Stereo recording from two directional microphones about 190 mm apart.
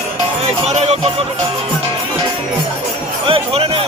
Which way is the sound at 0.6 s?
35° right (ahead or behind).